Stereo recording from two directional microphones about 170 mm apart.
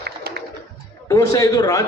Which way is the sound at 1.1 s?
20° left (ahead or behind).